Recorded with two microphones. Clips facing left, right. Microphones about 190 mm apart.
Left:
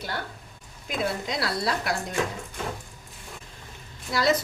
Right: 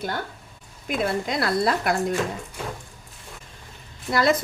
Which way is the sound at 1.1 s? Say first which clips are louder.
Right 6 dB; 55° right (ahead or behind).